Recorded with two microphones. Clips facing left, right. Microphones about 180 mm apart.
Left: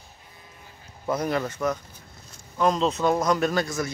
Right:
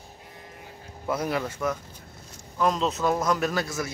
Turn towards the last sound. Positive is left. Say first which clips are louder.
# left 3 dB
turn(degrees=-5)  # may be behind; listen again after turning